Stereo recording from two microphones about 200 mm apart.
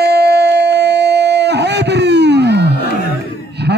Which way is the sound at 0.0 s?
55° right (ahead or behind).